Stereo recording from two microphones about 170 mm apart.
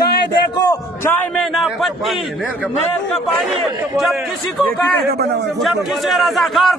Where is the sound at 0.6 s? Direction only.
20° left (ahead or behind).